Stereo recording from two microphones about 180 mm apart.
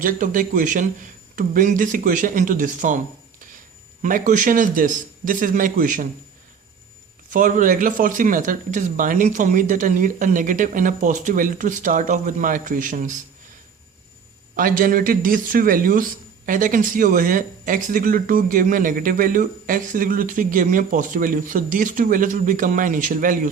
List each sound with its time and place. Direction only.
0.0 s speech: 50° right (ahead or behind)
4.0 s speech: 45° right (ahead or behind)
7.3 s speech: 45° right (ahead or behind)
14.5 s speech: 50° right (ahead or behind)